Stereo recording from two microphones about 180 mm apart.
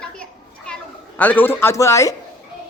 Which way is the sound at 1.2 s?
10° left (ahead or behind).